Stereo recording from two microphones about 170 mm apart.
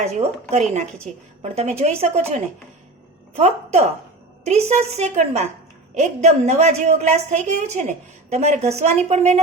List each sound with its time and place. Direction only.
0.0 s a woman's voice: 40° right (ahead or behind)